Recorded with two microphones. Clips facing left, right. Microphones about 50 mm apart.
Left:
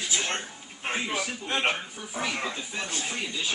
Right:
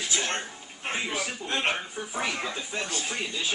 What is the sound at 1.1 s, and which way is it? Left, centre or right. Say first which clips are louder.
Speech: left 1 dB; left.